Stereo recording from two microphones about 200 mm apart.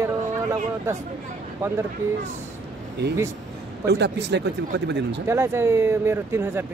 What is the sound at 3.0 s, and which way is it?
Speech, 60° right (ahead or behind).